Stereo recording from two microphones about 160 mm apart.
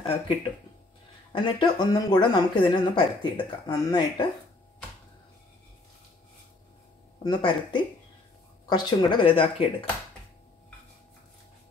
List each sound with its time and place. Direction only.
1.3 s speech: 30° left (ahead or behind)
7.2 s speech: 30° left (ahead or behind)